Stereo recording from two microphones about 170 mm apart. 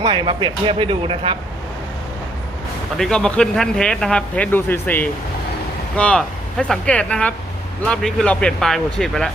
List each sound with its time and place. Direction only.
0.0 s speech: 25° right (ahead or behind)
3.0 s speech: 5° left (ahead or behind)